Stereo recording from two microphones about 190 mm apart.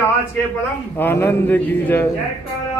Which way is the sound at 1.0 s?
10° left (ahead or behind).